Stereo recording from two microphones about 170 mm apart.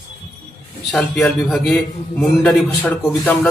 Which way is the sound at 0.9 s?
Centre (ahead or behind).